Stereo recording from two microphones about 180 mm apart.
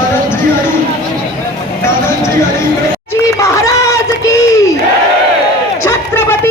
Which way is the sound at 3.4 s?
15° left (ahead or behind).